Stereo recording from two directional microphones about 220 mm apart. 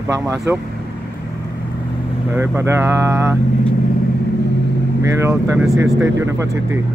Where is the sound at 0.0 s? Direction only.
15° right (ahead or behind).